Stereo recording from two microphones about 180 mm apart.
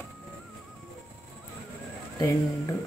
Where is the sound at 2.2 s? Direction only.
15° left (ahead or behind).